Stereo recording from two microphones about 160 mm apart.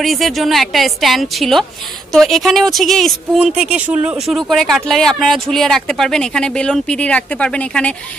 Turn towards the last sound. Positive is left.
turn(degrees=5)  # may be behind; listen again after turning